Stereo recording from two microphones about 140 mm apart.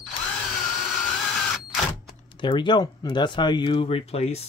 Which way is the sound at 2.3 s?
35° left (ahead or behind).